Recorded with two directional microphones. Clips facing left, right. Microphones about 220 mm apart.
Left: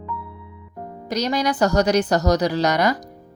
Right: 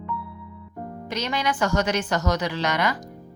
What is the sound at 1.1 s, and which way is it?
Speech, 40° left (ahead or behind).